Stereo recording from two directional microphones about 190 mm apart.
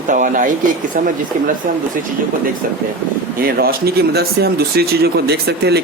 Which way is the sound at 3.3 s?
50° right (ahead or behind).